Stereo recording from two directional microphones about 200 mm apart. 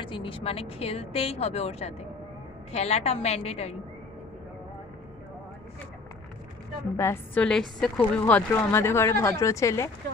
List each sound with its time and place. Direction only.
0.0 s a woman's voice: 25° left (ahead or behind)
7.0 s a woman's voice: 10° left (ahead or behind)